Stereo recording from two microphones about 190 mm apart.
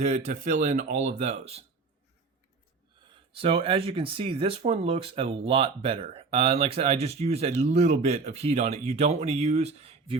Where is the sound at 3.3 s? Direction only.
30° right (ahead or behind).